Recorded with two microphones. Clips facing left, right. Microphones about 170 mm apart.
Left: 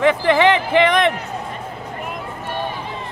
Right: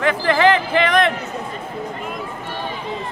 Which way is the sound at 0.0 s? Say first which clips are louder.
Left 2 dB; 20° left (ahead or behind).